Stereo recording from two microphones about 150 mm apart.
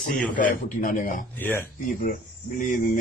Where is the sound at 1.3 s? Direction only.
15° left (ahead or behind).